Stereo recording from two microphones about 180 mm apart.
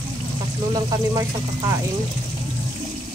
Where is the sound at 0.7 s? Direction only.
20° right (ahead or behind).